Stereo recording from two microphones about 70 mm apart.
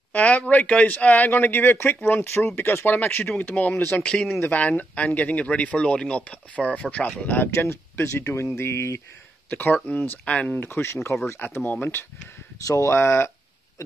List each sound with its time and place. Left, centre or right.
0.1 s speech: centre
4.0 s speech: centre
7.6 s speech: left
9.5 s speech: left
10.7 s speech: left
11.4 s speech: left
12.6 s speech: left